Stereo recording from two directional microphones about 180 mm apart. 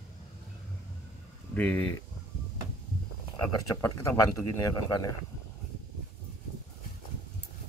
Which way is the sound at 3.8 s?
15° left (ahead or behind).